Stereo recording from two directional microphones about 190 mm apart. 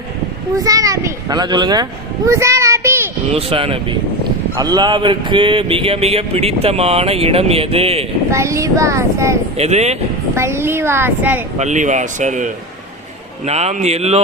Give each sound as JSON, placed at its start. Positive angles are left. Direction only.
{"t": 0.5, "sound": "a child's voice", "side_deg": -20}
{"t": 3.3, "sound": "speech", "side_deg": -30}
{"t": 8.3, "sound": "speech", "side_deg": -15}
{"t": 9.6, "sound": "speech", "side_deg": -35}
{"t": 10.3, "sound": "speech", "side_deg": -15}
{"t": 11.5, "sound": "speech", "side_deg": -40}